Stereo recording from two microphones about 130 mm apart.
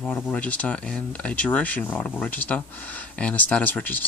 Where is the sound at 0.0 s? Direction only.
10° left (ahead or behind).